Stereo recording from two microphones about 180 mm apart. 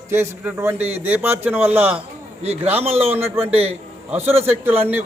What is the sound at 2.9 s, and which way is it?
Speech, 35° right (ahead or behind).